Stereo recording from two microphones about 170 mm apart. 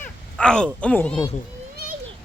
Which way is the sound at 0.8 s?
5° left (ahead or behind).